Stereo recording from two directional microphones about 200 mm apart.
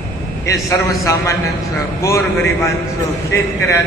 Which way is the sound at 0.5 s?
15° left (ahead or behind).